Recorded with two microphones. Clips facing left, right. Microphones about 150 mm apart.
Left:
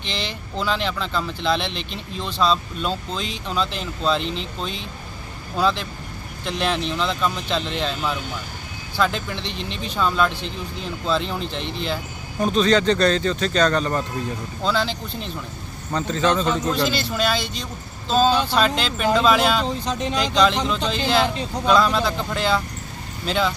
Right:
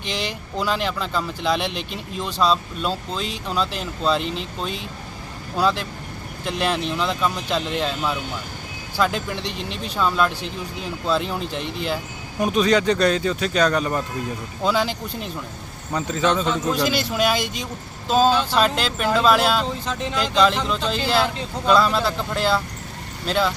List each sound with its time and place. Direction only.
0.5 s speech: 10° right (ahead or behind)
19.6 s speech: 20° left (ahead or behind)
20.1 s speech: 5° right (ahead or behind)